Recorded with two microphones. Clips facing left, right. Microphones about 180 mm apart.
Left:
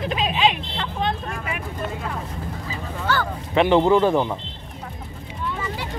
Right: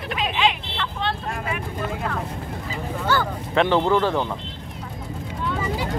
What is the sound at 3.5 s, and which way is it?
Speech, 15° left (ahead or behind).